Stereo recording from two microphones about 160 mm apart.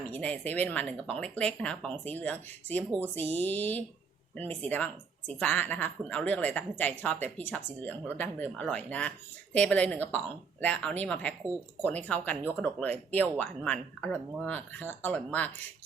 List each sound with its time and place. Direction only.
0.1 s speech: 10° left (ahead or behind)
3.0 s speech: 40° right (ahead or behind)
3.3 s speech: 10° left (ahead or behind)